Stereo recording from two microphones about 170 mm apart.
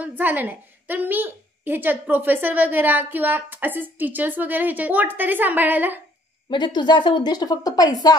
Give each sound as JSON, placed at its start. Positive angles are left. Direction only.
{"t": 0.0, "sound": "a woman's voice", "side_deg": -10}
{"t": 6.5, "sound": "a woman's voice", "side_deg": 25}